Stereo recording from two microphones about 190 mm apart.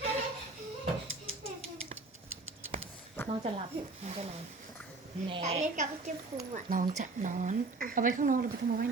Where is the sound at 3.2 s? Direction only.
10° left (ahead or behind).